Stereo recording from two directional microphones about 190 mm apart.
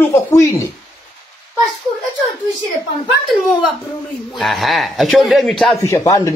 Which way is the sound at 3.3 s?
Centre (ahead or behind).